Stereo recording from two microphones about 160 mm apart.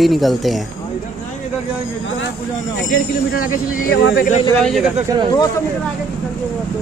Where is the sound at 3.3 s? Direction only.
65° left (ahead or behind).